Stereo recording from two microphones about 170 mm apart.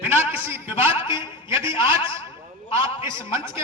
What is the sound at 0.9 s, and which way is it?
A man's voice, 30° left (ahead or behind).